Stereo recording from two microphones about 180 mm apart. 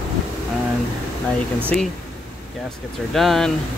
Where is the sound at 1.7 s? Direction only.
5° left (ahead or behind).